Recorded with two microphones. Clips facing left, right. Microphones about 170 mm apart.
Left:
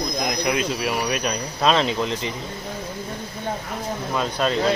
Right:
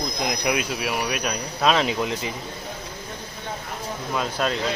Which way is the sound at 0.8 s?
5° right (ahead or behind).